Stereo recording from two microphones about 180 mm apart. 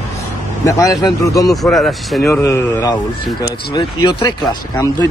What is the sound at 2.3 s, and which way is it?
A man's voice, 15° left (ahead or behind).